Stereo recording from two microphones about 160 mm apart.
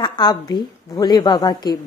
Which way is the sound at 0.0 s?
25° left (ahead or behind).